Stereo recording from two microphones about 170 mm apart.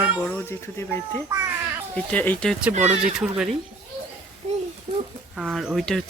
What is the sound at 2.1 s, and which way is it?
Speech, 10° left (ahead or behind).